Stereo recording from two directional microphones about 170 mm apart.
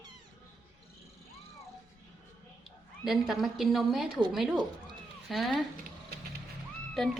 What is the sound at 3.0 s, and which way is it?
Speech, centre (ahead or behind).